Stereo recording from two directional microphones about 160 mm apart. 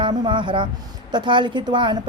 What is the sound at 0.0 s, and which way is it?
A woman's voice, 30° right (ahead or behind).